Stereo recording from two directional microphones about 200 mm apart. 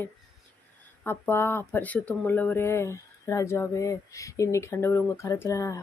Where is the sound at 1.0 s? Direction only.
10° left (ahead or behind).